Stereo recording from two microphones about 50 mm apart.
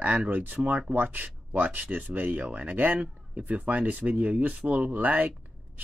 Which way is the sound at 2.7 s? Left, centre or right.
Right.